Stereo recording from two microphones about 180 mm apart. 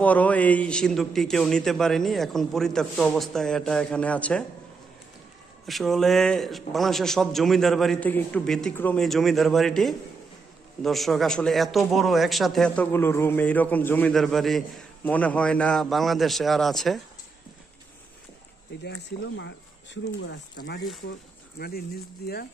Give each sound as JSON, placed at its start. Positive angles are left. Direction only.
{"t": 0.0, "sound": "a man's voice", "side_deg": 10}
{"t": 5.7, "sound": "a man's voice", "side_deg": 0}
{"t": 18.9, "sound": "speech", "side_deg": 85}